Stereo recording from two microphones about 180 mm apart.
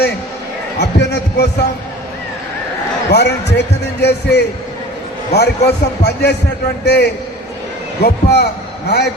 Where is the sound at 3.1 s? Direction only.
70° left (ahead or behind).